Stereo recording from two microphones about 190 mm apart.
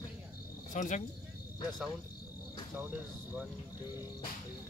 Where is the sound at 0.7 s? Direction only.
40° left (ahead or behind).